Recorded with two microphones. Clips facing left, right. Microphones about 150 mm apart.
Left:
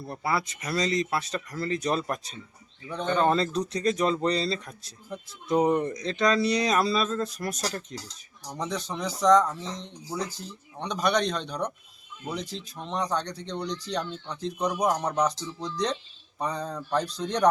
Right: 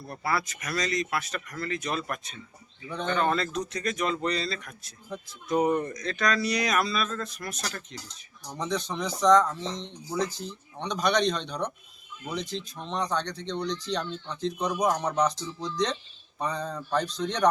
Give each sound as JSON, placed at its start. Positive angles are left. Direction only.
{"t": 0.0, "sound": "speech", "side_deg": 20}
{"t": 8.4, "sound": "speech", "side_deg": 10}